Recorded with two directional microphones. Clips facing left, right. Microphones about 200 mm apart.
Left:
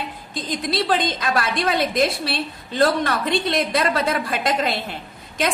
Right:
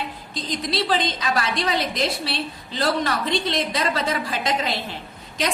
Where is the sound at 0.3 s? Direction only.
50° left (ahead or behind).